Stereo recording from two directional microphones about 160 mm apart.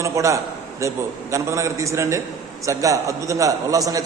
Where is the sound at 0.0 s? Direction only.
20° right (ahead or behind).